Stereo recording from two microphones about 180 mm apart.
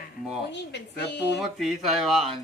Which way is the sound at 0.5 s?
75° left (ahead or behind).